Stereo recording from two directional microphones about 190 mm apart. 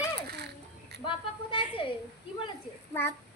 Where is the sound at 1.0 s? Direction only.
25° left (ahead or behind).